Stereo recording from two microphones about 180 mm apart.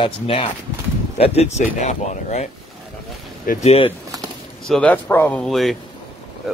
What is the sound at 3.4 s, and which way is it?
Speech, 35° left (ahead or behind).